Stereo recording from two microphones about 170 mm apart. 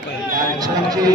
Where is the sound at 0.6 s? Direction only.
20° right (ahead or behind).